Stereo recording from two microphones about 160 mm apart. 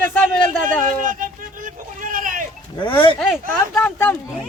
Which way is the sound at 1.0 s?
55° right (ahead or behind).